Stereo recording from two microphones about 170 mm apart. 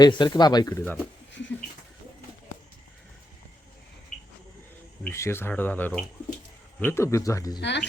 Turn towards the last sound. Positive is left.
turn(degrees=90)